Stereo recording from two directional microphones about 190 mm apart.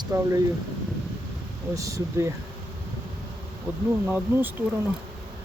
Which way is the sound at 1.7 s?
15° right (ahead or behind).